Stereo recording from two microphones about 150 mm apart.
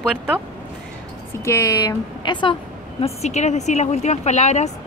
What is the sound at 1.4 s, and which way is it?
A woman's voice, 20° left (ahead or behind).